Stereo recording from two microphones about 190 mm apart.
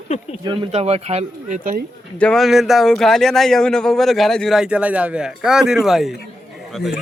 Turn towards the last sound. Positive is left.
turn(degrees=0)  # may be behind; listen again after turning